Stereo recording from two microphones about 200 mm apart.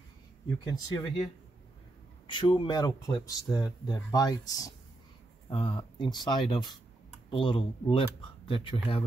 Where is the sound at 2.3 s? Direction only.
25° left (ahead or behind).